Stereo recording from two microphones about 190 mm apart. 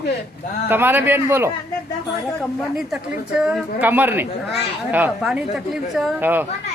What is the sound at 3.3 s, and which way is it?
Speech, 5° right (ahead or behind).